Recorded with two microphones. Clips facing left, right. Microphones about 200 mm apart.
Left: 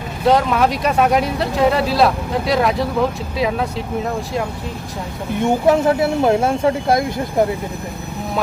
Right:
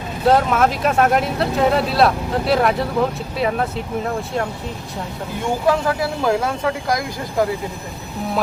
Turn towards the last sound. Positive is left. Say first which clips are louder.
# left 4 dB
turn(degrees=25)  # may be behind; listen again after turning